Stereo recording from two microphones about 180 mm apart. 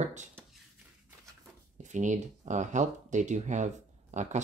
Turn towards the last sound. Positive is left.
turn(degrees=-40)  # may be behind; listen again after turning